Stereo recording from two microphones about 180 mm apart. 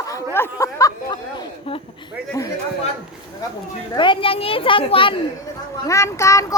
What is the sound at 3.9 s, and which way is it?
A woman's voice, 25° left (ahead or behind).